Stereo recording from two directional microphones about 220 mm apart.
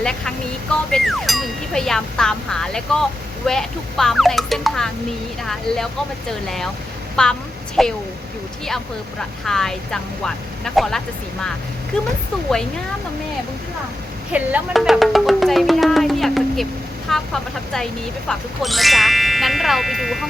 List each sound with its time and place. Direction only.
0.0 s speech: 5° left (ahead or behind)
7.2 s speech: 5° left (ahead or behind)
9.5 s speech: centre (ahead or behind)
14.3 s music: 5° right (ahead or behind)
17.1 s speech: centre (ahead or behind)
18.3 s speech: centre (ahead or behind)